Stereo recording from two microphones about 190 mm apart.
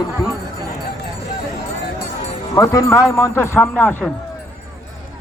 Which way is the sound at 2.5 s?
15° left (ahead or behind).